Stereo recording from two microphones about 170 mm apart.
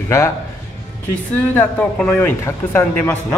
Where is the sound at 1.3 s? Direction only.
10° left (ahead or behind).